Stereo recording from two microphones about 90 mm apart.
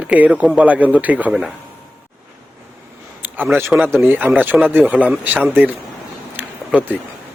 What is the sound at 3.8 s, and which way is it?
A man's voice, 25° right (ahead or behind).